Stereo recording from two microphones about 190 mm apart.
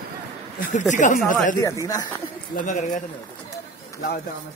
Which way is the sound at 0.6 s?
40° left (ahead or behind).